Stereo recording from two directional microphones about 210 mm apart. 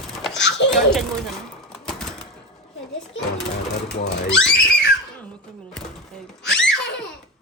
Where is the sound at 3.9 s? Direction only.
55° left (ahead or behind).